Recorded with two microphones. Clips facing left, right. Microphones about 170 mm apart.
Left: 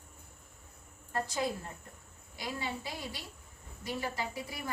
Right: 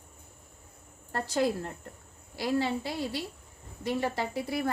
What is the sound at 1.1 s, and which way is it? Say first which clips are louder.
A woman's voice: right 6 dB; 70° right (ahead or behind).